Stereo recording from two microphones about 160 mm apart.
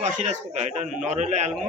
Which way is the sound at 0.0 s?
45° right (ahead or behind).